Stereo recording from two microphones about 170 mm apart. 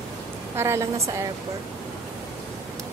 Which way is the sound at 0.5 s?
15° right (ahead or behind).